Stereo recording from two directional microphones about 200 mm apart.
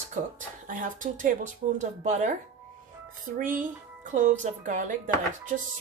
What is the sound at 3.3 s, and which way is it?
Speech, 45° right (ahead or behind).